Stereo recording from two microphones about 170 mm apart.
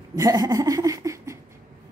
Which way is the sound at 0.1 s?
20° right (ahead or behind).